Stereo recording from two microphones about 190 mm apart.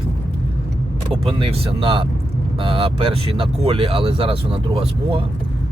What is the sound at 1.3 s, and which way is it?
Speech, 30° right (ahead or behind).